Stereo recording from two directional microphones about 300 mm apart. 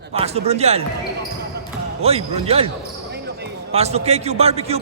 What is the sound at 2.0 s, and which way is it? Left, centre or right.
Speech, centre.